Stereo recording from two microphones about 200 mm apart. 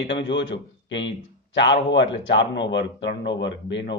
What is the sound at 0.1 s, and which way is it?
A man's voice, 65° left (ahead or behind).